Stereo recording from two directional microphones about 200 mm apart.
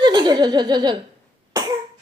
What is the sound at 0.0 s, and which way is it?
Laughter, 20° right (ahead or behind).